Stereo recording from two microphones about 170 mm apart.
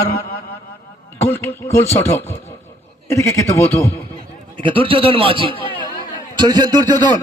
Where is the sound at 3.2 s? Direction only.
15° left (ahead or behind).